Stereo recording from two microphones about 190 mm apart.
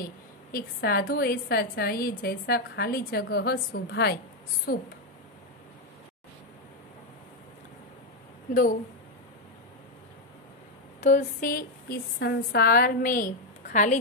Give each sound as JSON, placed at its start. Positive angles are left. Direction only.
{"t": 0.0, "sound": "a woman's voice", "side_deg": 50}
{"t": 11.0, "sound": "a woman's voice", "side_deg": 40}